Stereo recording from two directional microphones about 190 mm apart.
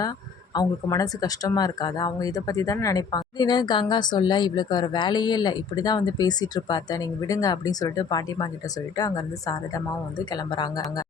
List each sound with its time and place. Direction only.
0.5 s speech: 20° left (ahead or behind)